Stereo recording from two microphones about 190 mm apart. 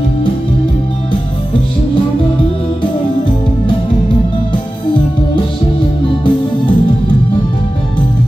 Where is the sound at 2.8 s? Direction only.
25° left (ahead or behind).